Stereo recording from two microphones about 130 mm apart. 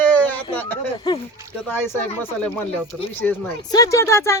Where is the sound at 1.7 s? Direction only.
15° left (ahead or behind).